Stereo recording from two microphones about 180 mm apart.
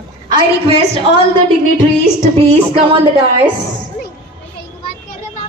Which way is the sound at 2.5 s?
35° right (ahead or behind).